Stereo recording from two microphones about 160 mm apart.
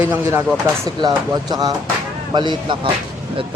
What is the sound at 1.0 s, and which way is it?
Speech, 25° right (ahead or behind).